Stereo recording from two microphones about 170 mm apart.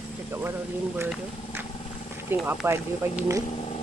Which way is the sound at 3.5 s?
35° left (ahead or behind).